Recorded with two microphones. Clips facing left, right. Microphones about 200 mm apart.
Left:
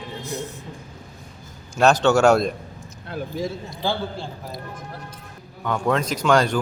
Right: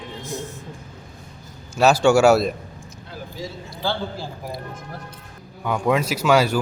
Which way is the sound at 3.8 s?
20° left (ahead or behind).